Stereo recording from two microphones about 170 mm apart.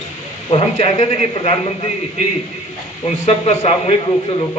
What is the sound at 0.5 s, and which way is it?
A man's voice, 35° left (ahead or behind).